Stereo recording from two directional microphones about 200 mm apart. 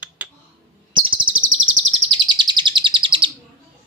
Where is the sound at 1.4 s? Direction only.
75° right (ahead or behind).